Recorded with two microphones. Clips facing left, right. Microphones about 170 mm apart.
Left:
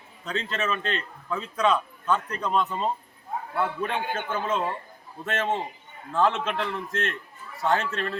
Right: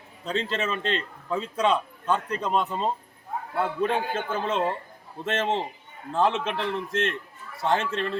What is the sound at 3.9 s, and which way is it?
A man's voice, 30° right (ahead or behind).